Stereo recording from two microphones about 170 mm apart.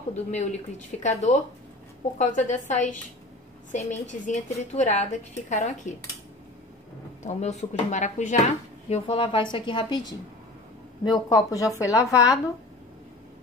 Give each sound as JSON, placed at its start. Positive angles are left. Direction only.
{"t": 0.3, "sound": "a woman's voice", "side_deg": 40}
{"t": 7.2, "sound": "a woman's voice", "side_deg": 45}